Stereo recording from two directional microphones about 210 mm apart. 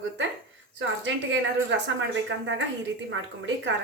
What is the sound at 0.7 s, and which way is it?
Speech, 65° right (ahead or behind).